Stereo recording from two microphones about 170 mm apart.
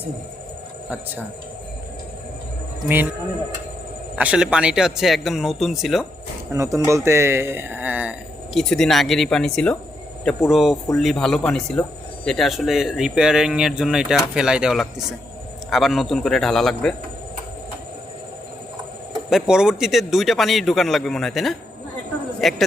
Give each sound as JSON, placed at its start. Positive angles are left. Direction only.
{"t": 4.1, "sound": "speech", "side_deg": -5}
{"t": 6.5, "sound": "speech", "side_deg": -20}
{"t": 8.5, "sound": "speech", "side_deg": 0}
{"t": 19.3, "sound": "a woman's voice", "side_deg": -5}